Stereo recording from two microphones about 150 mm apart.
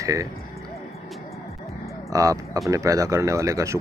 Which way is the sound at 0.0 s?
20° right (ahead or behind).